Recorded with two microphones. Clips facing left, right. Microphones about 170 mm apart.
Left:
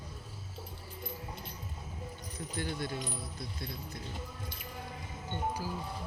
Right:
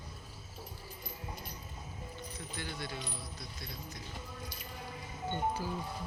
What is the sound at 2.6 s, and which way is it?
Speech, 50° left (ahead or behind).